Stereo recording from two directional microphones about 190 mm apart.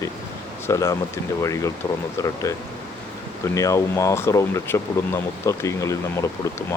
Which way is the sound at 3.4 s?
15° left (ahead or behind).